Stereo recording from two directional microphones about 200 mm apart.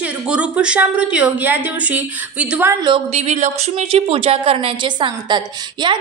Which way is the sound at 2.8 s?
30° right (ahead or behind).